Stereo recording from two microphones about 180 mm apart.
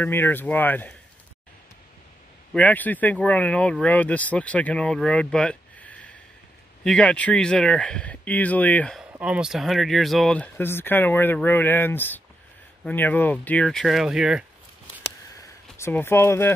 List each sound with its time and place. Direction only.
0.0 s speech: 10° left (ahead or behind)
2.5 s speech: 10° left (ahead or behind)
9.2 s speech: 5° right (ahead or behind)
15.4 s speech: 15° left (ahead or behind)